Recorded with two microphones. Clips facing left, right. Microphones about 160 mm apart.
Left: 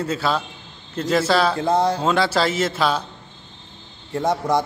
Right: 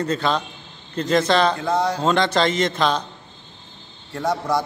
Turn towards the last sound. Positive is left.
turn(degrees=20)  # may be behind; listen again after turning